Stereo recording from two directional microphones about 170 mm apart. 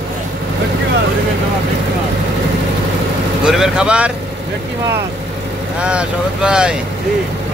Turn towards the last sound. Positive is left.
turn(degrees=-5)  # may be behind; listen again after turning